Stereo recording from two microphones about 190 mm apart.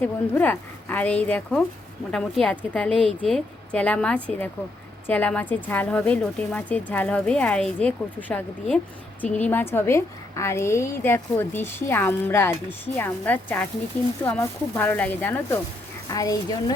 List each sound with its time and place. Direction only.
0.0 s a woman's voice: 10° left (ahead or behind)